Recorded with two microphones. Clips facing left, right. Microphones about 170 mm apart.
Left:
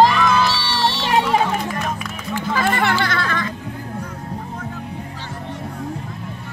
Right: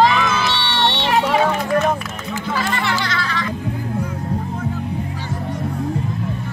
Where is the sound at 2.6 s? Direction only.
50° left (ahead or behind).